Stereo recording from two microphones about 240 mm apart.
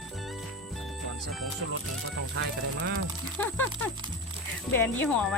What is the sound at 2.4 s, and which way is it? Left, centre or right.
Speech, right.